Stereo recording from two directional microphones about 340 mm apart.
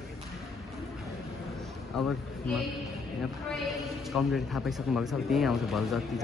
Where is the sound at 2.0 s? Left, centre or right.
Centre.